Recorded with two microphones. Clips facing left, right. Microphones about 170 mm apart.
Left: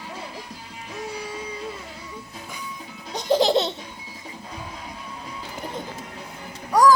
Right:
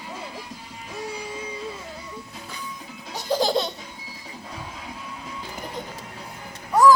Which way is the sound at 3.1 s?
20° left (ahead or behind).